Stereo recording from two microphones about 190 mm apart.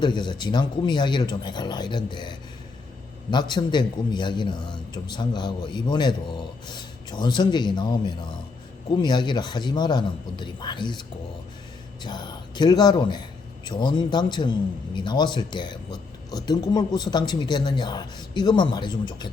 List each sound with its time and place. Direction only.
0.0 s a man's voice: 25° left (ahead or behind)
12.0 s a man's voice: 20° left (ahead or behind)